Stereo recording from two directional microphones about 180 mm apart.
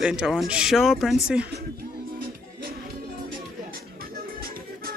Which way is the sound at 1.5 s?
60° right (ahead or behind).